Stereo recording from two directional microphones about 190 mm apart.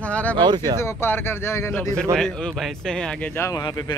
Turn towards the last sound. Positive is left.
turn(degrees=20)  # may be behind; listen again after turning